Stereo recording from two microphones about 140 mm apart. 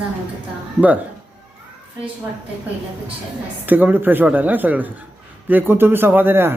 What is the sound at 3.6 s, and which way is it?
Speech, 15° right (ahead or behind).